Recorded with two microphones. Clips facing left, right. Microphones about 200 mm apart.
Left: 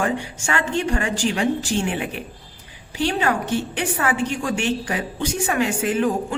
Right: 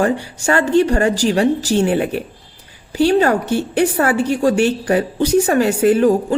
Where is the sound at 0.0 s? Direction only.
40° right (ahead or behind).